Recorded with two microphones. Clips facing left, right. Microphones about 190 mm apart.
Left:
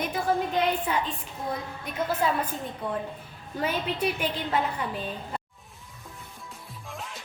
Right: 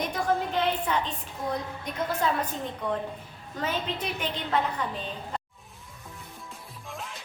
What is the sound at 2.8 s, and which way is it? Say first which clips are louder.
A woman's voice: right 2 dB; 5° left (ahead or behind).